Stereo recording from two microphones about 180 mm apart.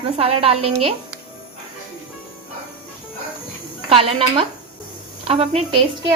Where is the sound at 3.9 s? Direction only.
35° right (ahead or behind).